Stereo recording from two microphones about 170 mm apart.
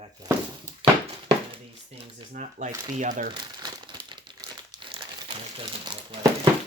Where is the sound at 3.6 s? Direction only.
25° right (ahead or behind).